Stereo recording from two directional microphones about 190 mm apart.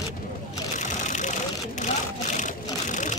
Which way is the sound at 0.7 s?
40° left (ahead or behind).